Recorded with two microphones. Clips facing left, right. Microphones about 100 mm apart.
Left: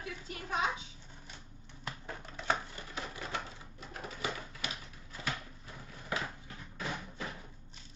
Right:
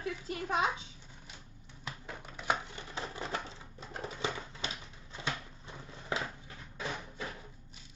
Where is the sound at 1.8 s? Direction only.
10° right (ahead or behind).